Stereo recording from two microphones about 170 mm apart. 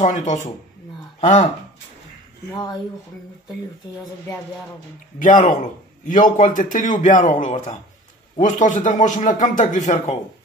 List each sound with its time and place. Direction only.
0.0 s a man's voice: 45° left (ahead or behind)
2.5 s speech: 25° left (ahead or behind)
5.2 s a man's voice: 50° left (ahead or behind)